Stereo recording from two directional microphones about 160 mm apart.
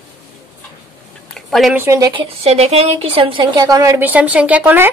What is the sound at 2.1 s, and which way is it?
A woman's voice, 35° right (ahead or behind).